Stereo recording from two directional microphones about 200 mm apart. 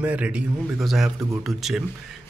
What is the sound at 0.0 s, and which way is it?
Speech, 5° right (ahead or behind).